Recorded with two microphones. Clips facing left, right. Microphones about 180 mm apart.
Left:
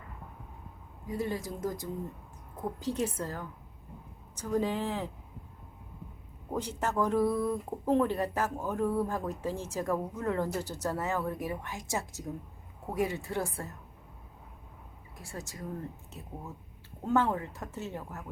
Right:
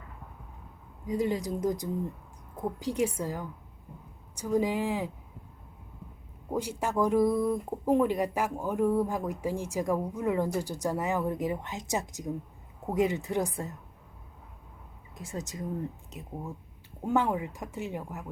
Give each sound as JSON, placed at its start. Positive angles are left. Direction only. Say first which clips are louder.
{"t": 1.0, "sound": "speech", "louder": "right 5 dB", "side_deg": -15}
{"t": 6.5, "sound": "speech", "louder": "right 2 dB", "side_deg": -10}
{"t": 15.1, "sound": "speech", "louder": "right 5 dB", "side_deg": -20}